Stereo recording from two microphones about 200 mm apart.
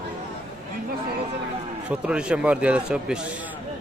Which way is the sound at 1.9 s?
5° right (ahead or behind).